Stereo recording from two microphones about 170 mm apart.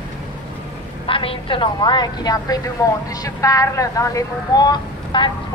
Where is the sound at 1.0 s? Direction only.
30° left (ahead or behind).